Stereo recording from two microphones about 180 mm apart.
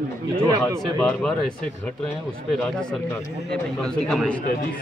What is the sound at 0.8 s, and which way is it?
Speech, 5° left (ahead or behind).